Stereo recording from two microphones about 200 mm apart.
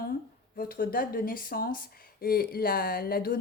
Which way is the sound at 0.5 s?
45° left (ahead or behind).